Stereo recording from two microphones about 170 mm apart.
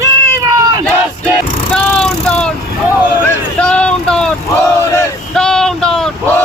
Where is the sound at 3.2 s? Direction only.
5° left (ahead or behind).